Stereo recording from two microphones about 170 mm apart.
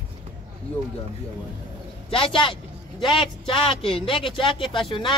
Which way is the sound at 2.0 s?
30° left (ahead or behind).